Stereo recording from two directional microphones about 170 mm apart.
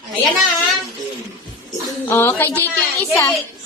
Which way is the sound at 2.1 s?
15° left (ahead or behind).